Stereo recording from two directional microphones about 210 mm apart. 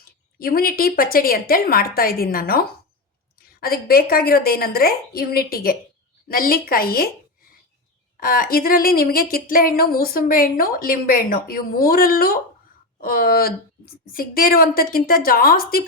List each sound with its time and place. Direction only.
0.3 s speech: 45° left (ahead or behind)
8.2 s speech: 45° left (ahead or behind)